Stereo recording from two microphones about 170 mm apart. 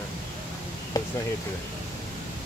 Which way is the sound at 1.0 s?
25° left (ahead or behind).